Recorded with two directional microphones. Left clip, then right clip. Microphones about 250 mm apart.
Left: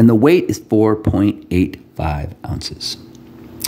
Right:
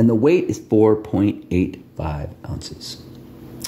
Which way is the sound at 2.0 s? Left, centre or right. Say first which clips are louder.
Left 6 dB; left.